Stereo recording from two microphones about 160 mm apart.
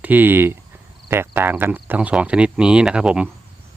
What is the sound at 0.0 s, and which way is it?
Speech, 10° right (ahead or behind).